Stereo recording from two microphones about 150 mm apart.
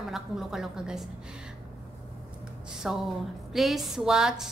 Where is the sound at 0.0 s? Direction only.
Centre (ahead or behind).